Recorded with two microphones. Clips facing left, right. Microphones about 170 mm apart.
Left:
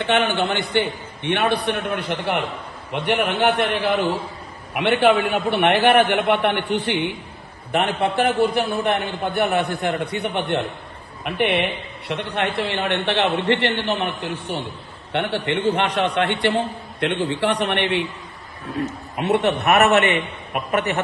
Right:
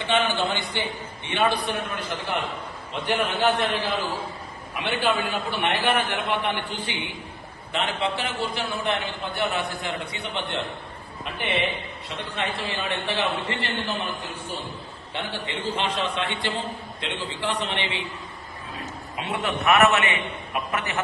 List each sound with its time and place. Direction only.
0.0 s a man's voice: 60° left (ahead or behind)